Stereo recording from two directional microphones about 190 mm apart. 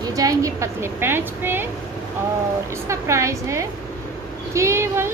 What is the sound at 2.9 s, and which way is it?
A woman's voice, 15° right (ahead or behind).